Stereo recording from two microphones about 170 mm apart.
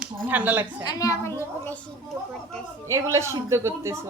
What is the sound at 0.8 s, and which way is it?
A woman's voice, 20° left (ahead or behind).